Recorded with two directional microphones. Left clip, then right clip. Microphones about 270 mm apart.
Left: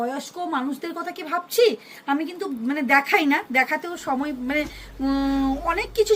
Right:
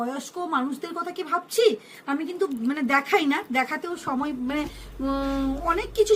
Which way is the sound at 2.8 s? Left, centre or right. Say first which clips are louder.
Left 4 dB; centre.